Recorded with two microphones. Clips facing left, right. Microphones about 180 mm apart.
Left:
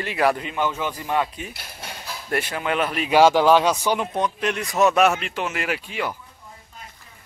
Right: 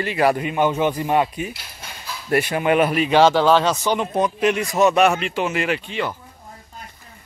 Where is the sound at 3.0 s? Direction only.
10° left (ahead or behind).